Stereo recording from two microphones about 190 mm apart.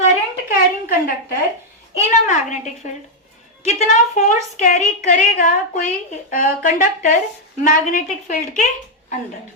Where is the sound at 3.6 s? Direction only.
40° left (ahead or behind).